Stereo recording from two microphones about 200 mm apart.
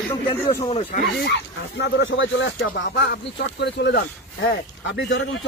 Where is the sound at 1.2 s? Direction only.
60° left (ahead or behind).